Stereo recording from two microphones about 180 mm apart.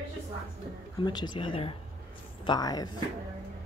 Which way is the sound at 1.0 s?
25° left (ahead or behind).